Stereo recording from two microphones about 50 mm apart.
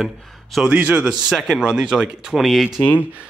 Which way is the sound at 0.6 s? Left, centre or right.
Right.